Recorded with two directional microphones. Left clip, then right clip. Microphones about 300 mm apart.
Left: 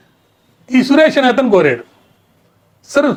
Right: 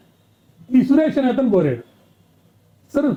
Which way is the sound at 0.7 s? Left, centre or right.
Centre.